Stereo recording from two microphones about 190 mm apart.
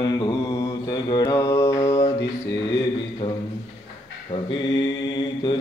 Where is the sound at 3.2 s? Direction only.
30° left (ahead or behind).